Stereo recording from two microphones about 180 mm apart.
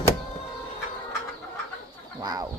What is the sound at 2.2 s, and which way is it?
Chicken, 20° right (ahead or behind).